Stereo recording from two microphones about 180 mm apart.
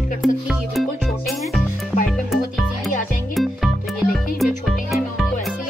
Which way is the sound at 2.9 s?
50° left (ahead or behind).